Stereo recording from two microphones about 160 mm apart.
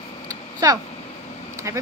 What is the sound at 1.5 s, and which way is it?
Vehicle, 20° right (ahead or behind).